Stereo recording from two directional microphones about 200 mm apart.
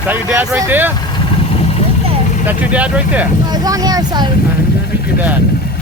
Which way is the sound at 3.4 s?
20° right (ahead or behind).